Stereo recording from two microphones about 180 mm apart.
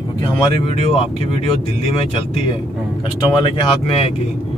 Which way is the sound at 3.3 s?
30° left (ahead or behind).